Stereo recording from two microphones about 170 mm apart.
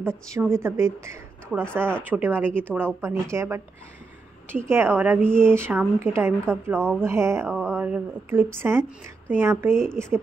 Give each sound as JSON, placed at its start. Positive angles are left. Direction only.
{"t": 0.3, "sound": "a woman's voice", "side_deg": -15}
{"t": 4.6, "sound": "a woman's voice", "side_deg": -15}
{"t": 7.4, "sound": "a sound", "side_deg": 5}
{"t": 7.7, "sound": "a woman's voice", "side_deg": -10}